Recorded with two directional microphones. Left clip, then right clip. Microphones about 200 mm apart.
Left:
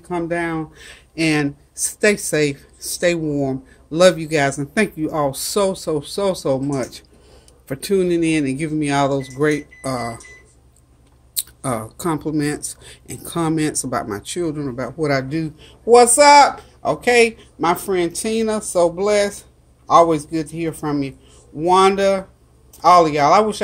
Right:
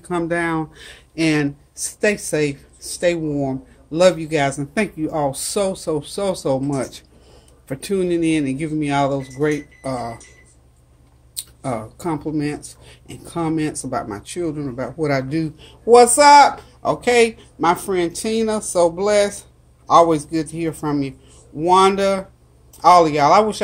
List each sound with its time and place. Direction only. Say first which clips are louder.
0.0 s speech: right 1 dB; 10° right (ahead or behind); by 10.2 s 25° left (ahead or behind)
11.3 s speech: left 2 dB; 20° left (ahead or behind); by 23.6 s centre (ahead or behind)